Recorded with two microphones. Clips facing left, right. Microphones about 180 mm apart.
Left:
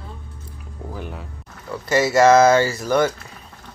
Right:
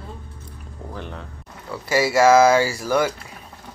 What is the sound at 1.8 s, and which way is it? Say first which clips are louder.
Speech: left 1 dB; 5° right (ahead or behind).